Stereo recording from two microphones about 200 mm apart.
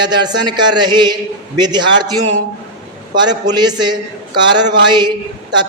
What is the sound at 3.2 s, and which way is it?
A man's voice, 20° right (ahead or behind).